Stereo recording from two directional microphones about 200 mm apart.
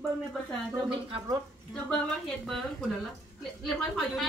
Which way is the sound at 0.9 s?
25° right (ahead or behind).